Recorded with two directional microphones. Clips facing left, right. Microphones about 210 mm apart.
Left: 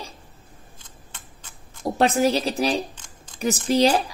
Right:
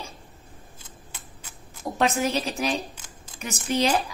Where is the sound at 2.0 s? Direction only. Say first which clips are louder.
Left 4 dB; 35° left (ahead or behind).